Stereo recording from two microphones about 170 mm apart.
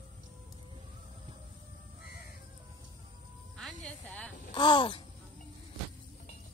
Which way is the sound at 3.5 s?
5° left (ahead or behind).